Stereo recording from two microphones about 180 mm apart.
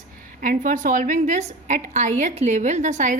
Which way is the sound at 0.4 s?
45° right (ahead or behind).